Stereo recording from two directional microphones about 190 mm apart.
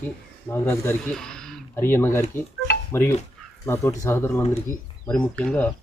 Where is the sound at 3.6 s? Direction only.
15° left (ahead or behind).